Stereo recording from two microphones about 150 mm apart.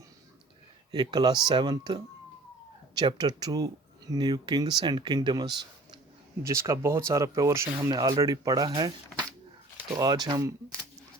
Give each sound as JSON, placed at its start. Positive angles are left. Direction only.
{"t": 0.9, "sound": "speech", "side_deg": -30}